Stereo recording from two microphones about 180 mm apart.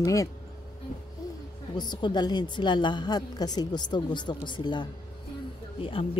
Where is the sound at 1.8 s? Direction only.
25° left (ahead or behind).